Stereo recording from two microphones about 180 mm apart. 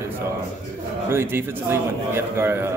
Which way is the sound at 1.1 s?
10° right (ahead or behind).